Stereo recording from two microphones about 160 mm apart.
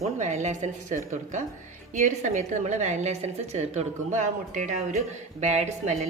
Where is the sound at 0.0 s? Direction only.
50° right (ahead or behind).